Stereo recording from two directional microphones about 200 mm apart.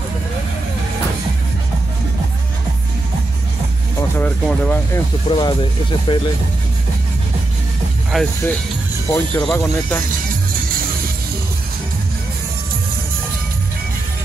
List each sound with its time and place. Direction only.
4.2 s speech: 10° left (ahead or behind)
5.3 s speech: 25° left (ahead or behind)
8.1 s speech: centre (ahead or behind)